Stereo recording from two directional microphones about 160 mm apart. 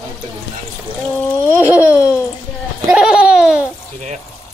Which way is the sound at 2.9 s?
5° right (ahead or behind).